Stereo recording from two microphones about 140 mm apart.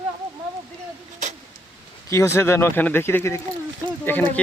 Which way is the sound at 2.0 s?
20° left (ahead or behind).